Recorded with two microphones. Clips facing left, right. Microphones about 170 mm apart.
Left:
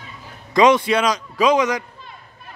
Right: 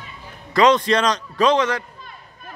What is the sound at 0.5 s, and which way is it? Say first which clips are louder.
A man's voice: left 1 dB; 15° left (ahead or behind).